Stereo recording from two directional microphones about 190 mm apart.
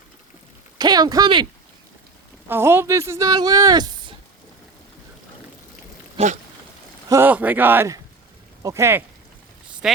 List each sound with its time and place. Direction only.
0.8 s speech: 20° right (ahead or behind)
2.5 s speech: 10° right (ahead or behind)
6.1 s a sound: 35° right (ahead or behind)
7.1 s speech: 10° right (ahead or behind)